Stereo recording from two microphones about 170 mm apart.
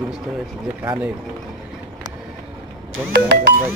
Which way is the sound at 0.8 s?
15° right (ahead or behind).